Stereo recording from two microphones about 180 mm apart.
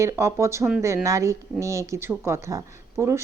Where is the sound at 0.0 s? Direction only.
15° right (ahead or behind).